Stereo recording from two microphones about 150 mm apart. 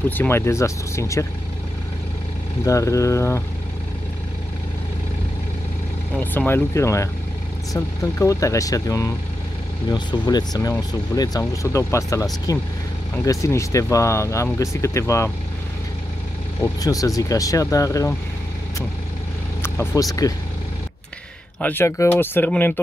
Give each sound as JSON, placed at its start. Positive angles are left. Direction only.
{"t": 0.1, "sound": "speech", "side_deg": 15}
{"t": 2.6, "sound": "speech", "side_deg": 20}
{"t": 6.3, "sound": "speech", "side_deg": 15}
{"t": 16.8, "sound": "speech", "side_deg": 25}
{"t": 19.6, "sound": "speech", "side_deg": 15}
{"t": 21.5, "sound": "speech", "side_deg": 10}